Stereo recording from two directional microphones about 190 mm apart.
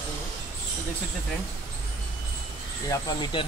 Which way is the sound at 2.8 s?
20° left (ahead or behind).